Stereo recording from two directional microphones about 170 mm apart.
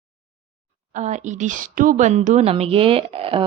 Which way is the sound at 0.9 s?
45° right (ahead or behind).